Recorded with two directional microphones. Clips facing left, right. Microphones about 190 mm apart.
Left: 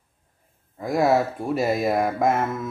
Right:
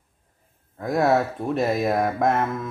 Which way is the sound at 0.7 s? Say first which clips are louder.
Even; centre (ahead or behind).